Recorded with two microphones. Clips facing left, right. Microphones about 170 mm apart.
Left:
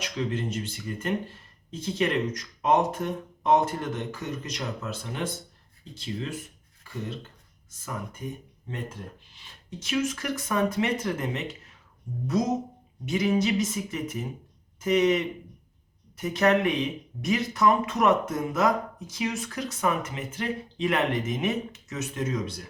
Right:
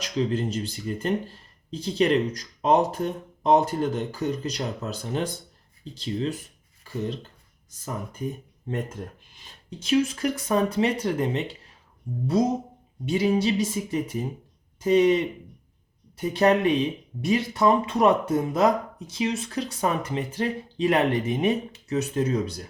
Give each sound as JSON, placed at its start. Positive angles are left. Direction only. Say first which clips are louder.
{"t": 0.0, "sound": "speech", "louder": "right 4 dB", "side_deg": -35}
{"t": 9.6, "sound": "speech", "louder": "right 5 dB", "side_deg": -30}